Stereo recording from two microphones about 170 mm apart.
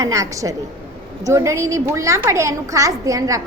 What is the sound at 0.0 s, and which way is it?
A woman's voice, 20° right (ahead or behind).